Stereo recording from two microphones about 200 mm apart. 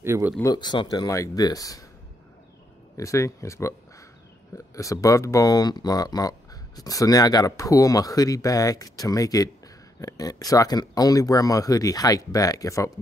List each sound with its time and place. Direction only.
0.0 s speech: 10° right (ahead or behind)
0.4 s speech: 20° left (ahead or behind)
3.0 s speech: 15° left (ahead or behind)
4.7 s speech: 15° left (ahead or behind)